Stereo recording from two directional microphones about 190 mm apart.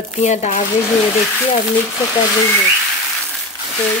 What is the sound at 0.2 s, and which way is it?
Speech, 40° left (ahead or behind).